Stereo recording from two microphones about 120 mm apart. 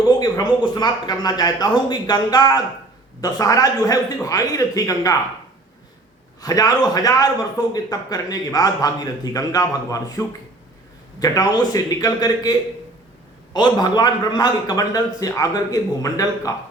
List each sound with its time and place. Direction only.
0.2 s a man's voice: 35° left (ahead or behind)
6.4 s a man's voice: 30° left (ahead or behind)